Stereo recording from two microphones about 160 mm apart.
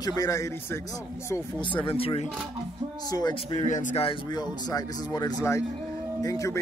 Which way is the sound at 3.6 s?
50° left (ahead or behind).